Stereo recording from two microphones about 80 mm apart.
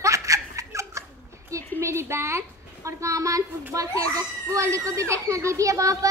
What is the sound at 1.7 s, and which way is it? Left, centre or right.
A woman's voice, right.